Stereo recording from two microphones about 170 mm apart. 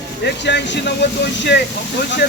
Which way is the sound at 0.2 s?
85° left.